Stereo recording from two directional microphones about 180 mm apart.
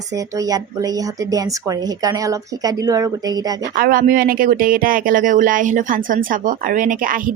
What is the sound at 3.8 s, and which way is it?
Speech, 50° right (ahead or behind).